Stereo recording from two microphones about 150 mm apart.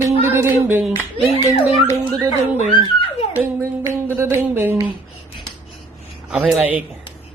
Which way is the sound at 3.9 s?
15° right (ahead or behind).